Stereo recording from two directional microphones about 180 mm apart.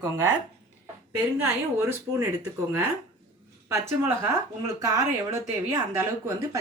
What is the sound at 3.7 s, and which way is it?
Speech, 15° right (ahead or behind).